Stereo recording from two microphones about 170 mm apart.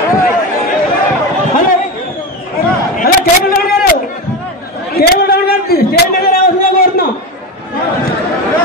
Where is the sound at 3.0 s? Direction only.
60° left (ahead or behind).